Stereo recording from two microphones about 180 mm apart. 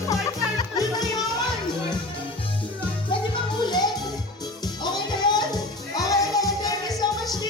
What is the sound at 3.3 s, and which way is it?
Music, 25° left (ahead or behind).